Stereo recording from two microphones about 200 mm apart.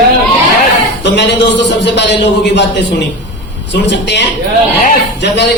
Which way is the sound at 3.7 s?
60° left (ahead or behind).